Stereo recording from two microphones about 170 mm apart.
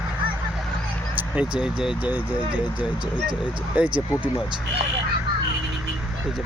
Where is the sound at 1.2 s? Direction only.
5° right (ahead or behind).